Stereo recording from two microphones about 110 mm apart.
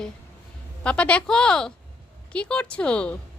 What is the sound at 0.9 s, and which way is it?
Speech, 10° left (ahead or behind).